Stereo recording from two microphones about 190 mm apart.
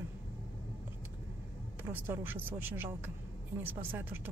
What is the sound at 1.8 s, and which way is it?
Speech, 10° right (ahead or behind).